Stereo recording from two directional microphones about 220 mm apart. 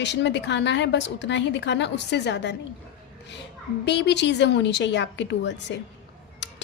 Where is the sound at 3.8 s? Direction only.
50° left (ahead or behind).